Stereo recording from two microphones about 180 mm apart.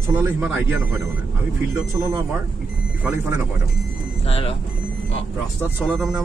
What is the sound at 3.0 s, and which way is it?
Speech, 15° right (ahead or behind).